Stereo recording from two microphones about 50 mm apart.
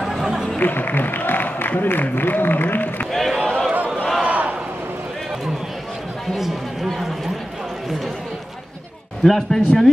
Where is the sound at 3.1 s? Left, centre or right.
Centre.